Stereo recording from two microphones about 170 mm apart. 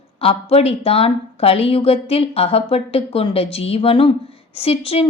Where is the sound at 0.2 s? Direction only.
35° left (ahead or behind).